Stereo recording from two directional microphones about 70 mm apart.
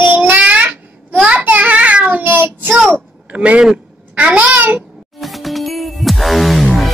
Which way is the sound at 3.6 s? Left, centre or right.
Centre.